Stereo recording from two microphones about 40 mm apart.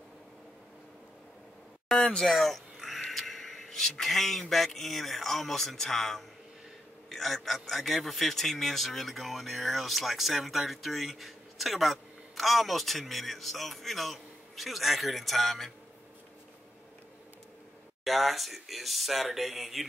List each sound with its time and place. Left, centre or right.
2.0 s speech: centre
2.2 s a sound: centre
4.6 s a man's voice: centre
18.0 s a man's voice: centre